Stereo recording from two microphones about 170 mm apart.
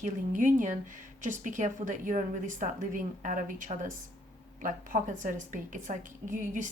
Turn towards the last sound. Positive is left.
turn(degrees=-50)  # may be behind; listen again after turning